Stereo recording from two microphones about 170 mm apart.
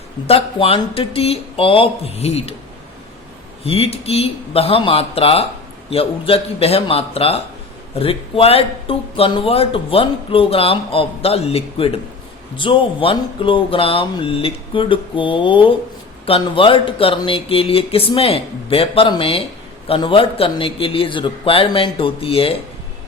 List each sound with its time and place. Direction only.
0.3 s speech: 35° left (ahead or behind)
3.6 s speech: 35° left (ahead or behind)